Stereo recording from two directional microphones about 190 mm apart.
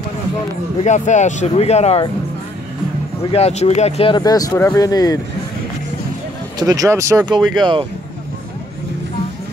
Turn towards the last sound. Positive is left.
turn(degrees=-25)  # may be behind; listen again after turning